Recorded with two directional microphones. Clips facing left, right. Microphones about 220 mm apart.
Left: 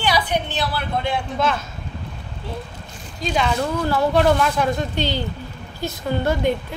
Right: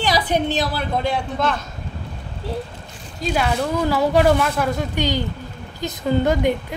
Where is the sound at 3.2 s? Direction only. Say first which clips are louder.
Right 1 dB; 5° right (ahead or behind).